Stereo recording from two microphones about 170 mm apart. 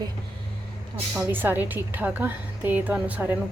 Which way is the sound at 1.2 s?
10° right (ahead or behind).